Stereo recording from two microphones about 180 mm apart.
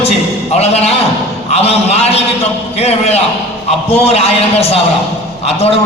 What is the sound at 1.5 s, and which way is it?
A man's voice, 35° left (ahead or behind).